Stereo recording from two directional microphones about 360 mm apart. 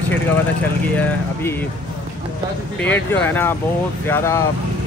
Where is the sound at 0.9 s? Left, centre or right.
Centre.